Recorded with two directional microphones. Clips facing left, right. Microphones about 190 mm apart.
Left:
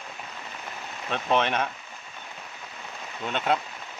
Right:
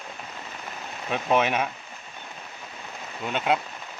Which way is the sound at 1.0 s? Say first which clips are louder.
Right 2 dB; 10° right (ahead or behind).